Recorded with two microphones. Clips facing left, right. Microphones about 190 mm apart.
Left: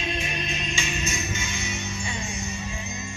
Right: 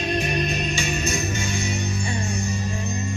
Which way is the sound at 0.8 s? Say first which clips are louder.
Right 5 dB; 35° right (ahead or behind).